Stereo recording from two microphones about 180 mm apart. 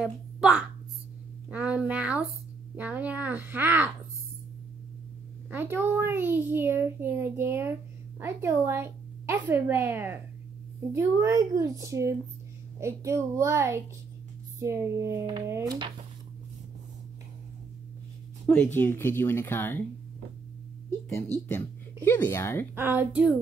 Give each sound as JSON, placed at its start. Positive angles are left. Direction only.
{"t": 0.0, "sound": "a child's voice", "side_deg": -5}
{"t": 1.5, "sound": "a sound", "side_deg": -5}
{"t": 2.7, "sound": "a child's voice", "side_deg": -10}
{"t": 5.5, "sound": "a child's voice", "side_deg": -10}
{"t": 18.5, "sound": "speech", "side_deg": 10}
{"t": 21.5, "sound": "speech", "side_deg": 10}
{"t": 22.8, "sound": "a child's voice", "side_deg": -10}